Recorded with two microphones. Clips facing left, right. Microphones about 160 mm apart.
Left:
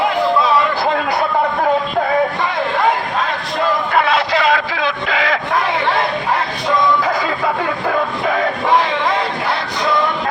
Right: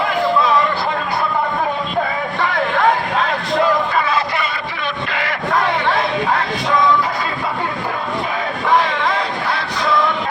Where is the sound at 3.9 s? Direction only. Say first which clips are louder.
Left 3 dB; 75° left (ahead or behind); by 5.4 s 90° left.